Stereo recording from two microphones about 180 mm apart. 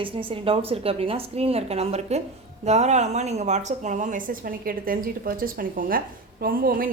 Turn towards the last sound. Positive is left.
turn(degrees=-55)  # may be behind; listen again after turning